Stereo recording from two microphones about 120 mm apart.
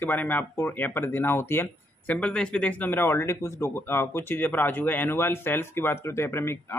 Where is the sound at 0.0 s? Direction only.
15° left (ahead or behind).